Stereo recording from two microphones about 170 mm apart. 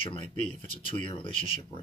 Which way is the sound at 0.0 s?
30° left (ahead or behind).